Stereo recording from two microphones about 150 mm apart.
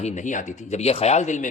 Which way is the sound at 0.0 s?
50° left (ahead or behind).